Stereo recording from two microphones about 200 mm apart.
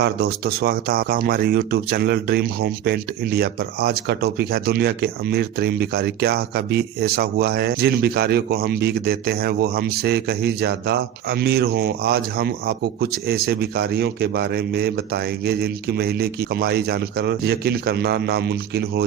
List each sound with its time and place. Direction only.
0.0 s speech: 55° right (ahead or behind)